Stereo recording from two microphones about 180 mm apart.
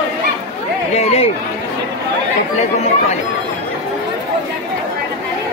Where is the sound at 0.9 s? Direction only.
35° left (ahead or behind).